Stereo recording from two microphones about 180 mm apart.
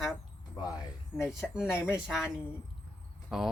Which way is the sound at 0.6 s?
20° left (ahead or behind).